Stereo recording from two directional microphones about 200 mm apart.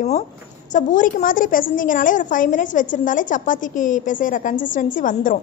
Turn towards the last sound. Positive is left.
turn(degrees=40)  # may be behind; listen again after turning